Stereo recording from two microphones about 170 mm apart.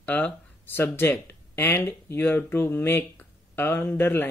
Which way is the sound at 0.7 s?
10° left (ahead or behind).